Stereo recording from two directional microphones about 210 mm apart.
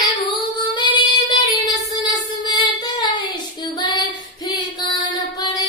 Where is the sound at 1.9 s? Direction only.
20° left (ahead or behind).